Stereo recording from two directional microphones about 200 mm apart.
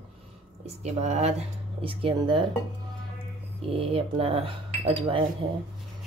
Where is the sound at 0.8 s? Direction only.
35° right (ahead or behind).